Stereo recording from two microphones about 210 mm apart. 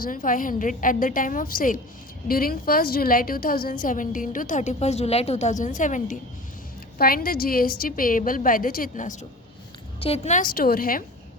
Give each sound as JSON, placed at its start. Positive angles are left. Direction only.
{"t": 0.0, "sound": "a woman's voice", "side_deg": 40}